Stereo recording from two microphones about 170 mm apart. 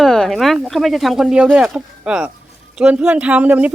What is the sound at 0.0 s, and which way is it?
Speech, centre (ahead or behind).